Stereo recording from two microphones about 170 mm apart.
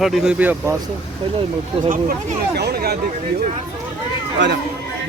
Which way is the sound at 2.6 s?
70° right (ahead or behind).